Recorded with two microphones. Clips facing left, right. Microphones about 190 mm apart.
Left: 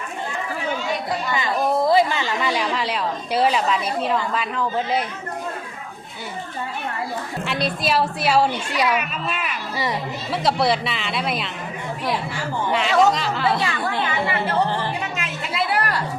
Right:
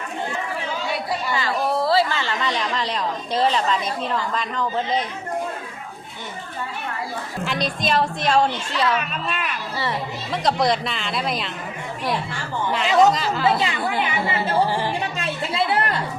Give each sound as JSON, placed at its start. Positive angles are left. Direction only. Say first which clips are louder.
{"t": 1.3, "sound": "a woman's voice", "louder": "left 2 dB", "side_deg": 15}
{"t": 7.4, "sound": "a woman's voice", "louder": "even", "side_deg": 5}
{"t": 12.7, "sound": "speech", "louder": "right 1 dB", "side_deg": 0}
{"t": 13.6, "sound": "speech", "louder": "right 1 dB", "side_deg": -20}
{"t": 14.5, "sound": "speech", "louder": "right 3 dB", "side_deg": -10}
{"t": 15.0, "sound": "a sound", "louder": "right 2 dB", "side_deg": -35}